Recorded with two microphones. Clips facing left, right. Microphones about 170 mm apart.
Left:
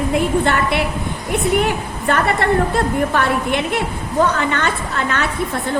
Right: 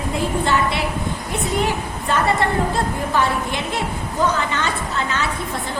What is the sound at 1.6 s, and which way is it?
A woman's voice, 60° left (ahead or behind).